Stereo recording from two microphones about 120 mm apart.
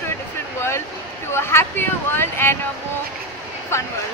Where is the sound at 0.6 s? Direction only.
20° left (ahead or behind).